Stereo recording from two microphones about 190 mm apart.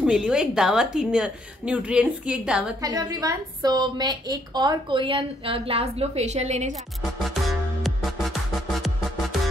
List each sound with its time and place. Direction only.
0.0 s a woman's voice: 5° right (ahead or behind)
2.8 s a woman's voice: 20° right (ahead or behind); by 6.8 s 35° right (ahead or behind)
7.0 s music: centre (ahead or behind)